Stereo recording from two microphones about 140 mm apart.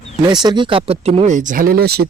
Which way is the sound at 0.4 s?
35° right (ahead or behind).